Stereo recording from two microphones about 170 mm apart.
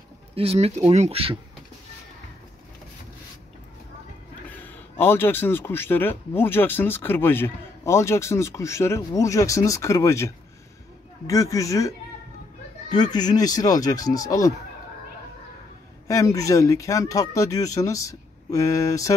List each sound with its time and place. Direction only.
0.4 s speech: 35° right (ahead or behind)
4.5 s speech: 10° left (ahead or behind)
12.9 s speech: 25° left (ahead or behind)
16.1 s speech: 20° left (ahead or behind)